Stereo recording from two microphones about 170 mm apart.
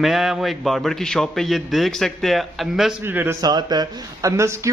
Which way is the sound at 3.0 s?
15° right (ahead or behind).